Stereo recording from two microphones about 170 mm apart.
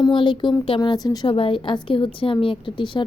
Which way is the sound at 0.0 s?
25° left (ahead or behind).